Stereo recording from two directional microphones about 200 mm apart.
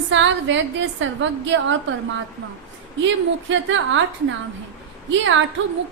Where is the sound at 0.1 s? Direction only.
65° right (ahead or behind).